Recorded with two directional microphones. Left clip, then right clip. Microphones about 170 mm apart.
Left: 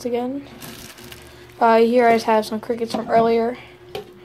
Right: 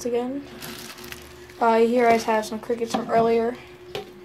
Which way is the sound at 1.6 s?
30° left (ahead or behind).